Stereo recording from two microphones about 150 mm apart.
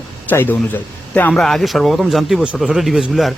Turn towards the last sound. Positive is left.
turn(degrees=0)  # may be behind; listen again after turning